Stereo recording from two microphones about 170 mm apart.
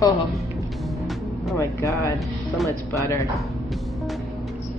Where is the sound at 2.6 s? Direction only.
20° left (ahead or behind).